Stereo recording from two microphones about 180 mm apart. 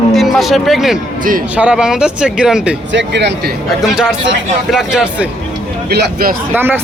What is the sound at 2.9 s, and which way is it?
Speech, 80° right.